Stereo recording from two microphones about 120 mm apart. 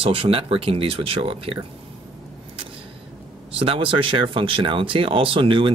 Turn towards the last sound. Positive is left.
turn(degrees=-45)  # may be behind; listen again after turning